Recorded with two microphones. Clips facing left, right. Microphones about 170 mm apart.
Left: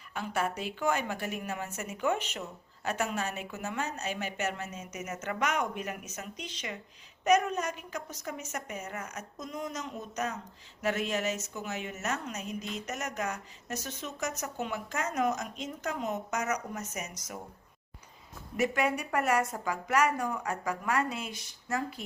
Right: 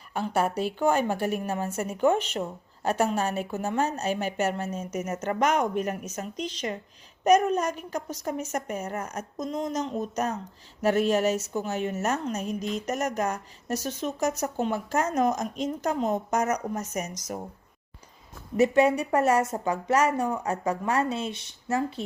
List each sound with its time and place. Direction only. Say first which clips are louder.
0.1 s a woman's voice: right 6 dB; 35° right (ahead or behind)
10.8 s a sound: right 8 dB; 35° right (ahead or behind)
11.1 s speech: right 9 dB; 35° right (ahead or behind)
13.7 s speech: right 9 dB; 35° right (ahead or behind)
16.3 s a woman's voice: right 7 dB; 50° right (ahead or behind)
18.5 s speech: right 8 dB; 25° right (ahead or behind)